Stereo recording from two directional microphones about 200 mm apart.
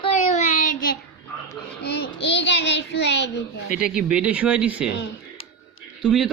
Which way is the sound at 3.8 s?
5° right (ahead or behind).